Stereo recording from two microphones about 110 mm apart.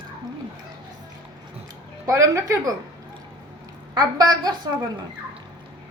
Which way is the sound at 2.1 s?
30° right (ahead or behind).